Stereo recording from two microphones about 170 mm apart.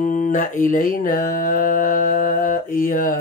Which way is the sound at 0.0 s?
50° left (ahead or behind).